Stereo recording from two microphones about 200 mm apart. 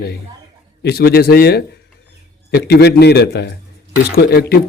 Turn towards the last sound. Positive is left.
turn(degrees=50)  # may be behind; listen again after turning